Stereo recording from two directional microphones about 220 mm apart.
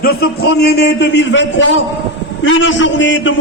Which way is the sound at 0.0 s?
45° left (ahead or behind).